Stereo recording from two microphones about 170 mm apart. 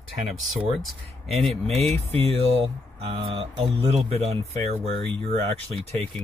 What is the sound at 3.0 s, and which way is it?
Speech, 35° right (ahead or behind).